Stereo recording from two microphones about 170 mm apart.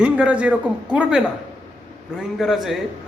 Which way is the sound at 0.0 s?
5° right (ahead or behind).